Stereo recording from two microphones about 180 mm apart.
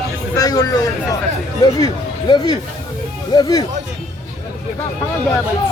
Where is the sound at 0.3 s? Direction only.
20° left (ahead or behind).